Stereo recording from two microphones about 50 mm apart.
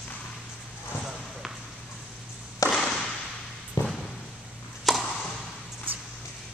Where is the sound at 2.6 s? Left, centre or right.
Left.